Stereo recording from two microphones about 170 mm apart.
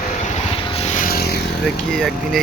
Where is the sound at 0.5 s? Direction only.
35° left (ahead or behind); by 1.4 s 65° left (ahead or behind).